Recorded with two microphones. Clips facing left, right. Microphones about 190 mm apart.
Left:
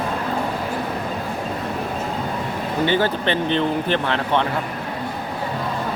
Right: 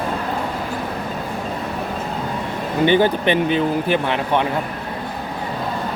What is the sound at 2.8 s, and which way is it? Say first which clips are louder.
Speech: right 5 dB; 15° right (ahead or behind).